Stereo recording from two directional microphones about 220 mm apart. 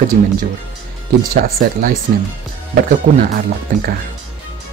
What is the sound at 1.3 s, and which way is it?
Speech, 40° right (ahead or behind).